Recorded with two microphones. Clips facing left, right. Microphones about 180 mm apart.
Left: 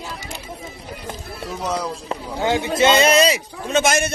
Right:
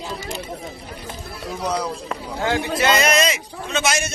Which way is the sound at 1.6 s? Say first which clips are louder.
Right 1 dB; 5° left (ahead or behind).